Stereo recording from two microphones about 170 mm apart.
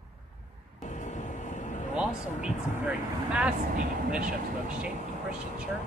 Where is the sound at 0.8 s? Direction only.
45° left (ahead or behind).